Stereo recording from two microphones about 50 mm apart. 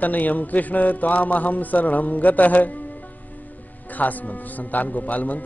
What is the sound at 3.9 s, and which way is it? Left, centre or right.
A man's voice, left.